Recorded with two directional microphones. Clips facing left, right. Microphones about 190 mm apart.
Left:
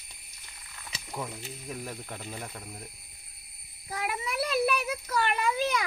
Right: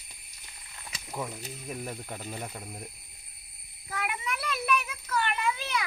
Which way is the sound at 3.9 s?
35° left (ahead or behind).